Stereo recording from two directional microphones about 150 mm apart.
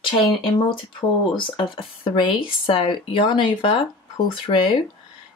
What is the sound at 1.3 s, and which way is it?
Speech, 35° left (ahead or behind).